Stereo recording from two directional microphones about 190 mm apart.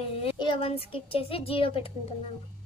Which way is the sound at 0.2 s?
25° left (ahead or behind).